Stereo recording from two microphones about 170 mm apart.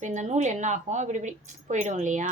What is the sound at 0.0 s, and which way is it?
Speech, 45° right (ahead or behind).